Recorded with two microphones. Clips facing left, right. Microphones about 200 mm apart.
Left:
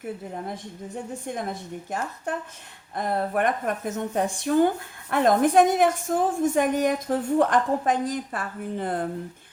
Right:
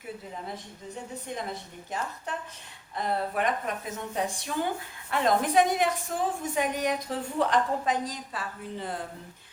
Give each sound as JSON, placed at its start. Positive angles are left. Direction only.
{"t": 0.0, "sound": "a woman's voice", "side_deg": 50}
{"t": 2.9, "sound": "a woman's voice", "side_deg": 50}